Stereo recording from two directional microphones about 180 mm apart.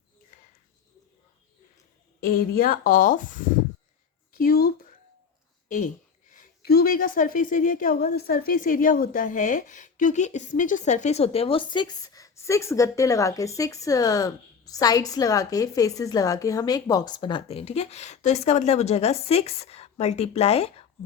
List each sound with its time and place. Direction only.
2.2 s speech: 55° left (ahead or behind)
4.3 s a sound: 55° left (ahead or behind)
5.6 s a woman's voice: 45° left (ahead or behind)